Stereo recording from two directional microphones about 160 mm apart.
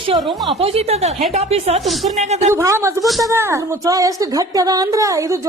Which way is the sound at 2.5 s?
15° right (ahead or behind).